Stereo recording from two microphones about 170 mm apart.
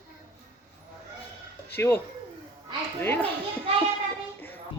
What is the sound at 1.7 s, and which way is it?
Speech, 10° left (ahead or behind).